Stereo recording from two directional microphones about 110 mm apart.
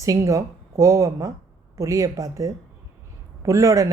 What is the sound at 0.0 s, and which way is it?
A woman's voice, 30° right (ahead or behind).